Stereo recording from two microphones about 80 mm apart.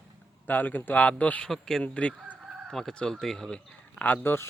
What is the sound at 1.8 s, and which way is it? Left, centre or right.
Speech, centre.